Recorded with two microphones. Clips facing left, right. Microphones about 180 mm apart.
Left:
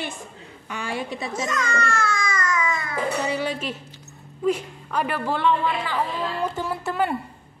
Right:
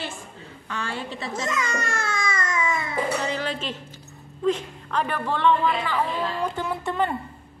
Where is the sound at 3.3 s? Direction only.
10° left (ahead or behind).